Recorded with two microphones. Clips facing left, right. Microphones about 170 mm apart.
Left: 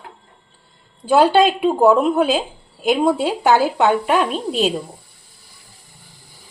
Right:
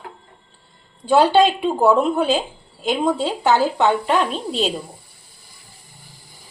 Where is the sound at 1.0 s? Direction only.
5° left (ahead or behind).